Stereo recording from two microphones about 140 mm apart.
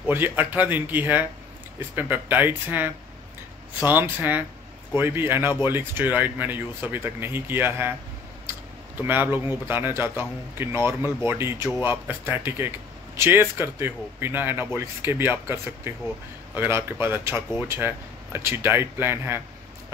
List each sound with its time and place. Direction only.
0.0 s a man's voice: 15° right (ahead or behind)
8.9 s a man's voice: 15° right (ahead or behind)